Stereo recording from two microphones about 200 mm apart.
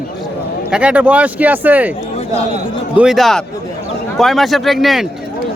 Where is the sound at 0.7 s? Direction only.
5° right (ahead or behind).